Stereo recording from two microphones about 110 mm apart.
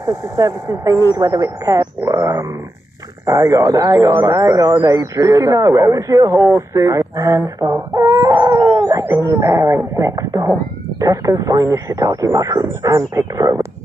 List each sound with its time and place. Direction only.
0.0 s speech: 30° right (ahead or behind)
8.4 s howl: 30° right (ahead or behind)
9.4 s speech: 25° right (ahead or behind)